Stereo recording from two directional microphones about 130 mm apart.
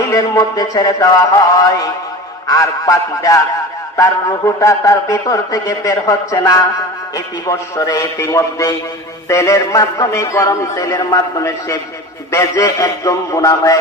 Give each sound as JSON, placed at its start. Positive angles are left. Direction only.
{"t": 0.1, "sound": "a man's voice", "side_deg": 25}